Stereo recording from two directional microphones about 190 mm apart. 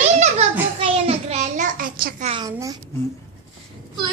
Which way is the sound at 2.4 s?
20° right (ahead or behind).